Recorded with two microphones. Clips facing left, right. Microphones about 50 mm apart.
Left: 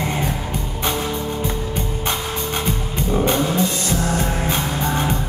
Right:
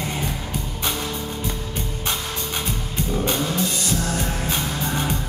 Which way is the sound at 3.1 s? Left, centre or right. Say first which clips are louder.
Left 5 dB; left.